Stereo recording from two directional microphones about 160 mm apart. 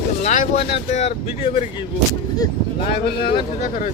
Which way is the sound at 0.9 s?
40° left (ahead or behind).